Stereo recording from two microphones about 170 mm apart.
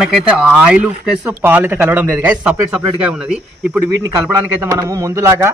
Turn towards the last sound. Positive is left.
turn(degrees=-15)  # may be behind; listen again after turning